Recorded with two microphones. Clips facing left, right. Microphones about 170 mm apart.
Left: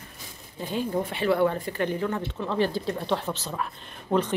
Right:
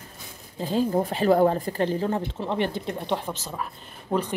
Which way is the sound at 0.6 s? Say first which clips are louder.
Right 4 dB; 35° right (ahead or behind).